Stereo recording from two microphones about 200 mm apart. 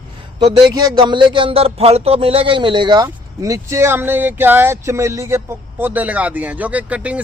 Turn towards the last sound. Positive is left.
turn(degrees=-5)  # may be behind; listen again after turning